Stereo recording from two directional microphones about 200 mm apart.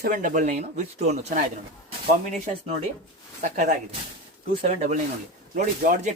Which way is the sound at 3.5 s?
40° right (ahead or behind).